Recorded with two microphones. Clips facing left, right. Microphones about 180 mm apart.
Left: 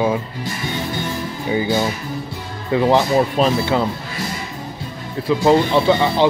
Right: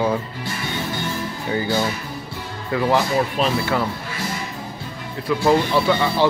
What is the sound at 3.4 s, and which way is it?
Speech, 40° left (ahead or behind).